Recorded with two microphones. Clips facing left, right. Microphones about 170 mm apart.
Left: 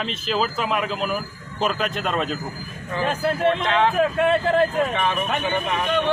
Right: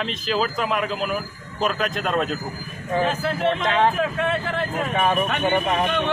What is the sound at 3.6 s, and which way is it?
Speech, 45° right (ahead or behind).